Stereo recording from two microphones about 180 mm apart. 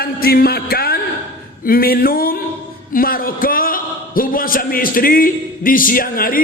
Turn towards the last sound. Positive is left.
turn(degrees=55)  # may be behind; listen again after turning